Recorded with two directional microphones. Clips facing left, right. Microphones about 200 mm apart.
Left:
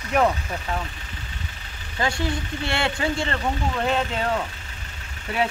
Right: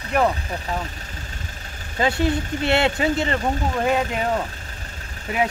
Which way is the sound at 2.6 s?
20° right (ahead or behind).